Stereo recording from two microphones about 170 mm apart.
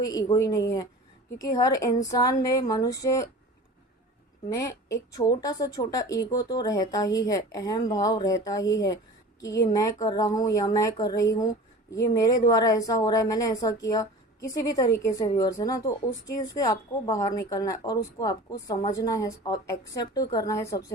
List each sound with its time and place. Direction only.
0.0 s a woman's voice: 20° left (ahead or behind)
4.4 s a woman's voice: 20° left (ahead or behind)